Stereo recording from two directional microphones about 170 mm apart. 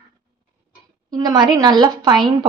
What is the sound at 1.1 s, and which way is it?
Speech, 25° right (ahead or behind).